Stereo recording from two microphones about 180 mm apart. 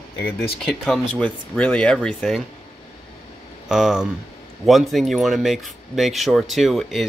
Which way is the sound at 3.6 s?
Centre (ahead or behind).